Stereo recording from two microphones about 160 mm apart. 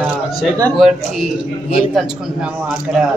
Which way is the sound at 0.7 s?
Centre (ahead or behind).